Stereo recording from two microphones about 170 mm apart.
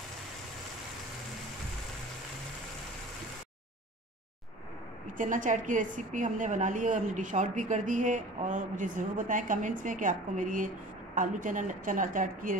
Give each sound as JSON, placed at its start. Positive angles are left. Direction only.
{"t": 5.0, "sound": "a woman's voice", "side_deg": -50}